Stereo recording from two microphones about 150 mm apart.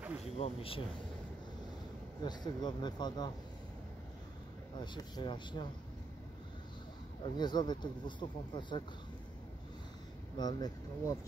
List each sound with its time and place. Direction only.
0.0 s a sound: 10° right (ahead or behind)
0.4 s speech: 40° left (ahead or behind)
2.2 s speech: 30° left (ahead or behind)
4.7 s speech: 30° left (ahead or behind)
7.2 s speech: 30° left (ahead or behind)
10.3 s speech: 25° left (ahead or behind)